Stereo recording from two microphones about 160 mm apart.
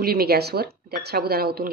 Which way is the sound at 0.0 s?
70° right (ahead or behind).